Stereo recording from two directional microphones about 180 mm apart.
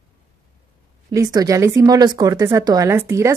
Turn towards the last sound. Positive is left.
turn(degrees=-15)  # may be behind; listen again after turning